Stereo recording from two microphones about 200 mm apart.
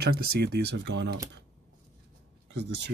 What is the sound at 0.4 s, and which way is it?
Speech, 55° right (ahead or behind).